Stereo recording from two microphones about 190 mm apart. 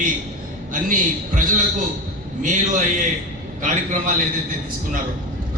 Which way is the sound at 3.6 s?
40° right (ahead or behind).